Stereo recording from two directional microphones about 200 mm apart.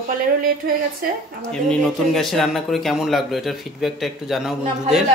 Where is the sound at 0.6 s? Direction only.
50° right (ahead or behind).